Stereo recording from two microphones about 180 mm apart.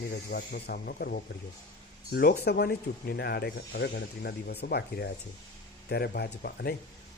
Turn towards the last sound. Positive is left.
turn(degrees=60)  # may be behind; listen again after turning